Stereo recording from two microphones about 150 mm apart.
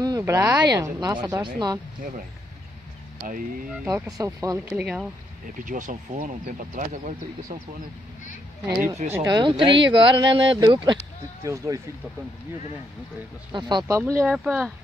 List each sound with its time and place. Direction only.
0.2 s speech: 20° right (ahead or behind)
3.3 s speech: 70° right (ahead or behind)
3.8 s speech: 20° right (ahead or behind)
4.7 s speech: 5° right (ahead or behind)
5.7 s speech: 55° right (ahead or behind)
8.8 s speech: 50° right (ahead or behind)
9.2 s speech: 30° right (ahead or behind)
11.4 s speech: 20° right (ahead or behind)
13.5 s speech: 30° right (ahead or behind)
14.2 s speech: centre (ahead or behind)